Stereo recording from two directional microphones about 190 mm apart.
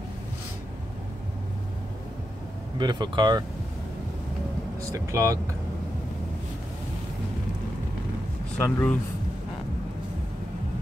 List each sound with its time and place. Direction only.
2.8 s speech: 25° right (ahead or behind)
4.9 s speech: 15° right (ahead or behind)
8.5 s speech: 10° left (ahead or behind)